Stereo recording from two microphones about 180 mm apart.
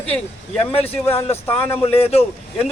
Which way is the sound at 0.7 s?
35° left (ahead or behind).